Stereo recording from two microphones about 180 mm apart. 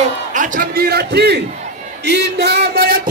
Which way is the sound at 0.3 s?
45° right (ahead or behind).